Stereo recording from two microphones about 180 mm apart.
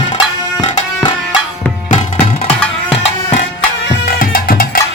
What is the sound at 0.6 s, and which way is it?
Music, 25° left (ahead or behind).